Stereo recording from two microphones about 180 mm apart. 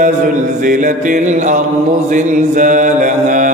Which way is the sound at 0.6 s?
45° right (ahead or behind).